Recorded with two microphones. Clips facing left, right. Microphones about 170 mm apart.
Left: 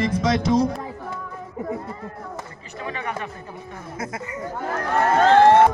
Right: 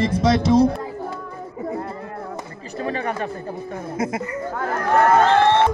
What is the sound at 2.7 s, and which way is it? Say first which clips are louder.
Chatter: right 5 dB; 35° right (ahead or behind).